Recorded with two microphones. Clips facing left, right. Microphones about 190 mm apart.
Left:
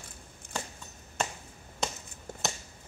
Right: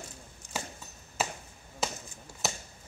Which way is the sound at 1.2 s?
5° right (ahead or behind).